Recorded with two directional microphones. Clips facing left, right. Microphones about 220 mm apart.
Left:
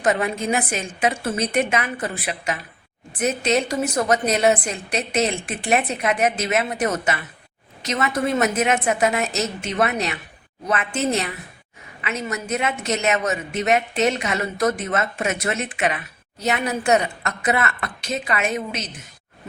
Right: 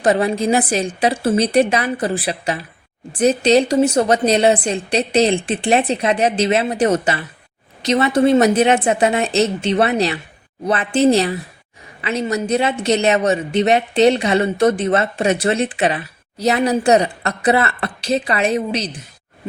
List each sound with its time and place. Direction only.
0.0 s speech: 35° right (ahead or behind)